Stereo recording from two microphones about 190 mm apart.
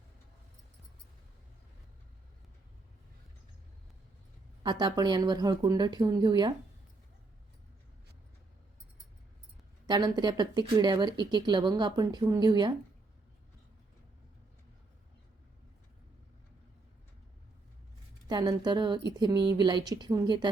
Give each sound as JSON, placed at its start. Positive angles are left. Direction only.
{"t": 4.6, "sound": "speech", "side_deg": -20}
{"t": 9.8, "sound": "speech", "side_deg": -20}
{"t": 18.3, "sound": "speech", "side_deg": -20}